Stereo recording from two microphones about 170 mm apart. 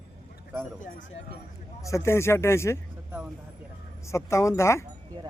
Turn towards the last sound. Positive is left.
turn(degrees=15)  # may be behind; listen again after turning